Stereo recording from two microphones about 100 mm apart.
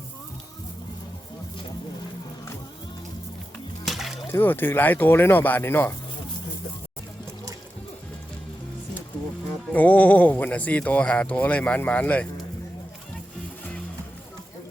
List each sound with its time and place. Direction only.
3.8 s a sound: centre (ahead or behind)
4.3 s speech: 20° left (ahead or behind)
9.7 s speech: 15° left (ahead or behind)